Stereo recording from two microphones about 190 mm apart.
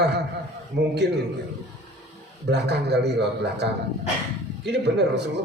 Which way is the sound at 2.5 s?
60° right (ahead or behind).